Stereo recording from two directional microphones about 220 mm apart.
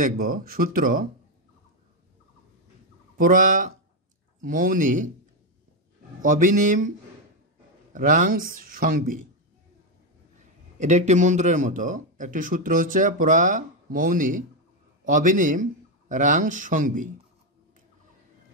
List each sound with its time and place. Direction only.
0.0 s speech: 40° right (ahead or behind)
3.2 s speech: 35° right (ahead or behind)
6.2 s speech: 35° right (ahead or behind)
7.9 s speech: 35° right (ahead or behind)
10.8 s speech: 30° right (ahead or behind)